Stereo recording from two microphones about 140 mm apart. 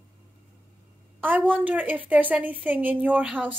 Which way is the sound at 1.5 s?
10° right (ahead or behind).